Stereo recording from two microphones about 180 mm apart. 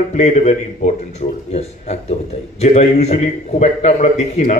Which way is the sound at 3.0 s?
40° left (ahead or behind).